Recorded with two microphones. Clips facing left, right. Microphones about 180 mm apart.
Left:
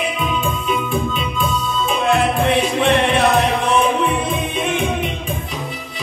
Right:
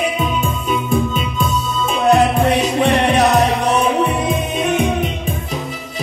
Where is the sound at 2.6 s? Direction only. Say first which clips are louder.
Right 1 dB; 40° right (ahead or behind).